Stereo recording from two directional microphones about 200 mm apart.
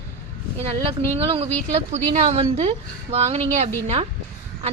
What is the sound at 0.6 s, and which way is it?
A woman's voice, 30° right (ahead or behind).